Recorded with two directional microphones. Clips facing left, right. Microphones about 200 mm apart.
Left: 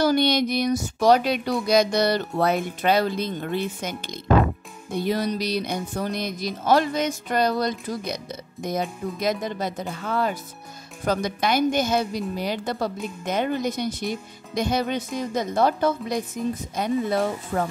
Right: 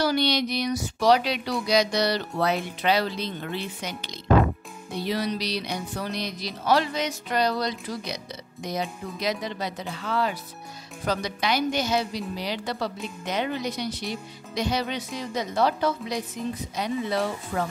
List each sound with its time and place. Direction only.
0.0 s speech: 50° left (ahead or behind)